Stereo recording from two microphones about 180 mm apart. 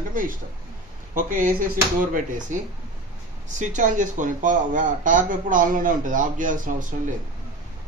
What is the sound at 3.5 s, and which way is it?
Speech, 45° right (ahead or behind).